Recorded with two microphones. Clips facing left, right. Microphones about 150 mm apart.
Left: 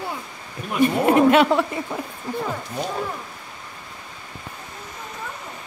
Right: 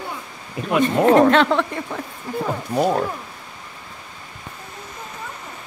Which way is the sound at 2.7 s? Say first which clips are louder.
Right 9 dB; 60° right (ahead or behind).